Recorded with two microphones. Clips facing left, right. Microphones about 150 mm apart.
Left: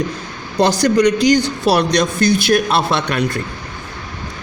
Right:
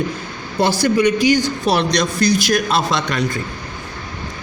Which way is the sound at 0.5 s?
75° left (ahead or behind).